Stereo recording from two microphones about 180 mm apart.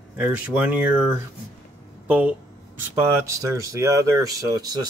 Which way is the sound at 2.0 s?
10° right (ahead or behind).